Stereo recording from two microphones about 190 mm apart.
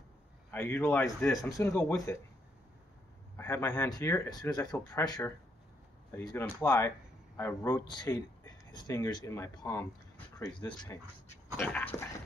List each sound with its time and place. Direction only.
0.5 s speech: 10° left (ahead or behind)
3.3 s speech: 15° left (ahead or behind)